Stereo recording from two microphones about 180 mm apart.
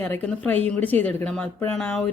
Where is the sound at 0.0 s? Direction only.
10° left (ahead or behind).